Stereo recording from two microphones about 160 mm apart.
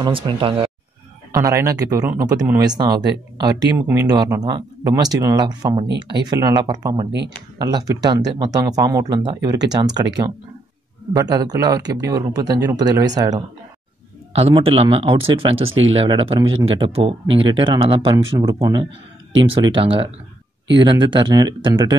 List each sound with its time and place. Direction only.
0.0 s speech: 30° right (ahead or behind)
1.3 s speech: 20° right (ahead or behind)
3.8 s speech: 10° right (ahead or behind)
4.1 s speech: 25° right (ahead or behind)
11.1 s speech: 25° right (ahead or behind)
14.3 s speech: 35° right (ahead or behind)